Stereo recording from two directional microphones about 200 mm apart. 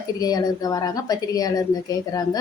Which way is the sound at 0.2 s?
20° left (ahead or behind).